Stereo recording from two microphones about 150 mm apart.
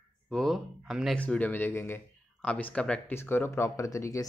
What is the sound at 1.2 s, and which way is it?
Speech, 10° left (ahead or behind).